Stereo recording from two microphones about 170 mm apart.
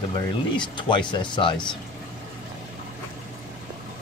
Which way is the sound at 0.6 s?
30° left (ahead or behind).